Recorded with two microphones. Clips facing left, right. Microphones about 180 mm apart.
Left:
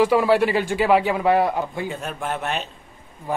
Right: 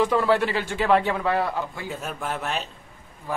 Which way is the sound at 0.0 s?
10° left (ahead or behind).